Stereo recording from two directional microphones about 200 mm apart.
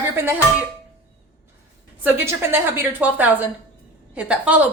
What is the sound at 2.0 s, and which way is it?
A woman's voice, 10° right (ahead or behind).